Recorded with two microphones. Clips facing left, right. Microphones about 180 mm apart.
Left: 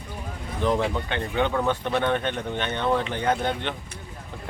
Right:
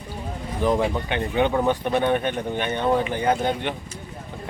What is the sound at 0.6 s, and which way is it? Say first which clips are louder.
Speech: right 2 dB; 10° right (ahead or behind).